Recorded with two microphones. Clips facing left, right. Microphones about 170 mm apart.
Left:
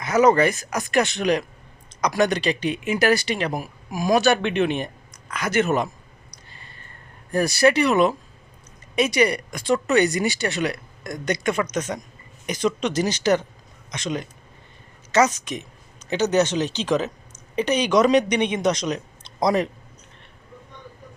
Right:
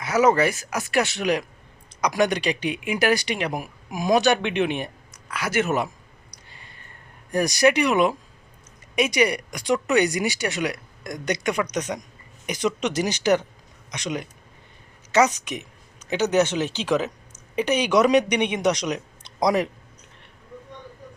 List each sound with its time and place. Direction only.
0.0 s speech: 10° right (ahead or behind)
6.3 s a sound: 15° right (ahead or behind)
7.3 s speech: 15° right (ahead or behind)